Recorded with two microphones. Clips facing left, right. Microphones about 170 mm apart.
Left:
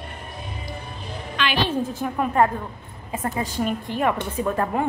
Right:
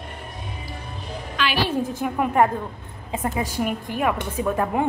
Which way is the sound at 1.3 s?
5° right (ahead or behind).